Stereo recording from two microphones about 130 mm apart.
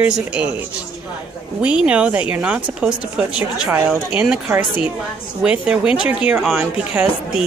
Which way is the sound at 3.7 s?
15° right (ahead or behind).